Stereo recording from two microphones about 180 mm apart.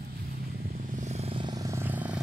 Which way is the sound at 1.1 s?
35° right (ahead or behind).